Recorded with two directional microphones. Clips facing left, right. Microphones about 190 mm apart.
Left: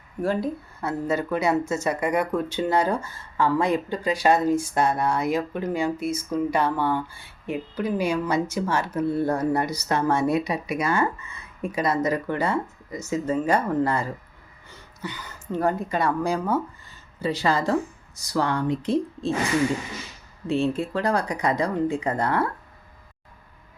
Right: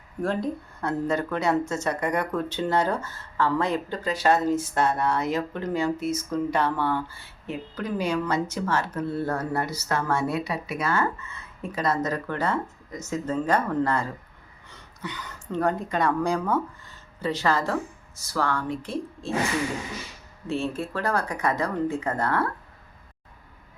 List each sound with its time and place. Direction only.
0.2 s speech: 5° left (ahead or behind)
20.5 s speech: 15° left (ahead or behind)